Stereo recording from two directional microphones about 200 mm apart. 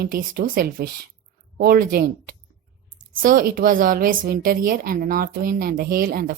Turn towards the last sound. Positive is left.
turn(degrees=-45)  # may be behind; listen again after turning